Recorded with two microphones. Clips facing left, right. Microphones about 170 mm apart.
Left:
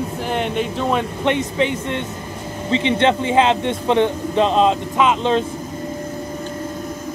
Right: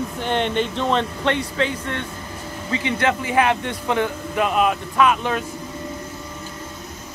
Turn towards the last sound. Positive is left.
turn(degrees=20)  # may be behind; listen again after turning